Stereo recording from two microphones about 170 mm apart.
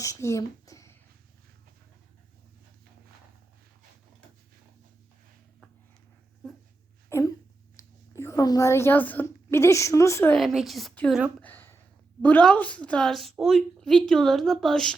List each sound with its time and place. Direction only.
0.0 s a sound: 20° left (ahead or behind)
6.4 s dog: 5° left (ahead or behind)
7.1 s a woman's voice: 15° left (ahead or behind)
10.3 s a woman's voice: centre (ahead or behind)
11.3 s a sound: 10° left (ahead or behind)
12.2 s a woman's voice: 10° left (ahead or behind)